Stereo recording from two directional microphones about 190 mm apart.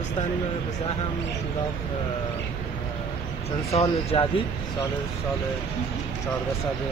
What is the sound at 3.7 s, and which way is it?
Speech, 35° left (ahead or behind).